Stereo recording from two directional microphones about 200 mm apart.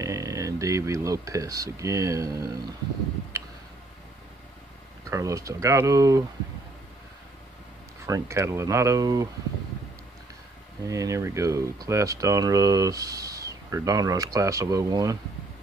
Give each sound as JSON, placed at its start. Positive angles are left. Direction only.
{"t": 0.0, "sound": "speech", "side_deg": -15}
{"t": 5.0, "sound": "speech", "side_deg": -15}
{"t": 8.1, "sound": "speech", "side_deg": -15}
{"t": 10.8, "sound": "speech", "side_deg": -15}